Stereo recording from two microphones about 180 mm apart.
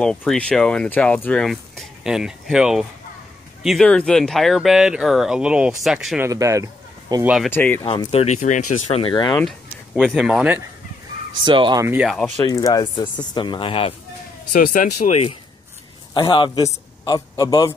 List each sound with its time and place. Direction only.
0.0 s speech: 5° left (ahead or behind)
6.2 s speech: 15° right (ahead or behind)
7.5 s speech: 10° left (ahead or behind)
7.8 s speech: 30° left (ahead or behind)
9.9 s speech: 5° right (ahead or behind)
11.4 s speech: 25° right (ahead or behind)
12.0 s speech: centre (ahead or behind)
12.4 s speech: 20° left (ahead or behind)
14.5 s a man's voice: 45° left (ahead or behind); by 17.7 s 20° left (ahead or behind)